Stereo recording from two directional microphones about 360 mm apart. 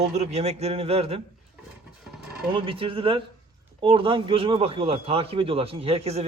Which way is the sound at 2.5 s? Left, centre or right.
Centre.